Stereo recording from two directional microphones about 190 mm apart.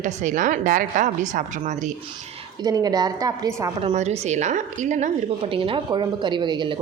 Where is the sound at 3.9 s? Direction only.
35° right (ahead or behind).